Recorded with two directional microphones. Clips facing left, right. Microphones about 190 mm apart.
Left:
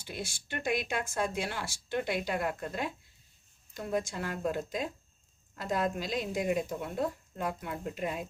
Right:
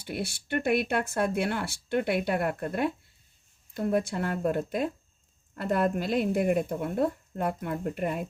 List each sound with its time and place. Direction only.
0.0 s speech: 60° right (ahead or behind)